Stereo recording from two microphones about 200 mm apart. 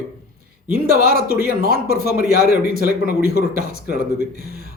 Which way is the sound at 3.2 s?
55° left (ahead or behind).